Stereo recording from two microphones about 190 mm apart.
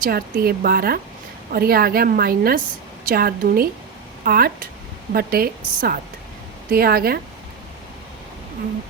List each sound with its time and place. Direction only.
0.0 s a woman's voice: 50° right (ahead or behind)